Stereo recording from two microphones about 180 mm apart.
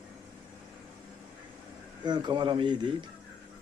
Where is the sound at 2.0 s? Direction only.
25° right (ahead or behind).